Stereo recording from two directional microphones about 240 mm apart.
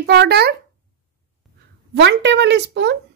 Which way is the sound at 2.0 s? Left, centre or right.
Right.